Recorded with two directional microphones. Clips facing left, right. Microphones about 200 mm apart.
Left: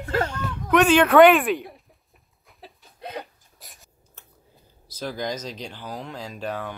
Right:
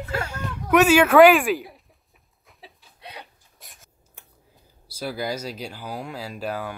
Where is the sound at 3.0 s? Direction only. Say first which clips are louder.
Left 7 dB; 50° left (ahead or behind).